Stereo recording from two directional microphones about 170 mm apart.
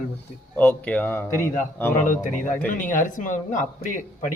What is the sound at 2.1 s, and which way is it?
Speech, 50° left (ahead or behind).